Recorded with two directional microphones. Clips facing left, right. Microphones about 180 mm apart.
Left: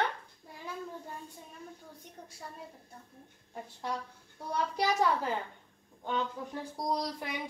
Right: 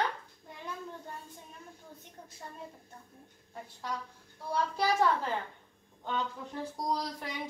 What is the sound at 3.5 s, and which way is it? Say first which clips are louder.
Speech: left 2 dB; 20° left (ahead or behind).